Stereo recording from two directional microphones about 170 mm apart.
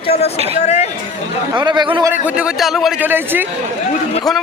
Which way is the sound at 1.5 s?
25° right (ahead or behind).